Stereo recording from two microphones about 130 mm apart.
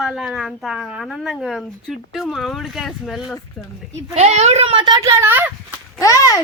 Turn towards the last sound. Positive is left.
turn(degrees=25)  # may be behind; listen again after turning